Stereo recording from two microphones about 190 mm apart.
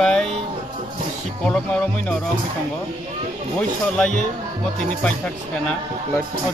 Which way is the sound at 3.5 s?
5° left (ahead or behind).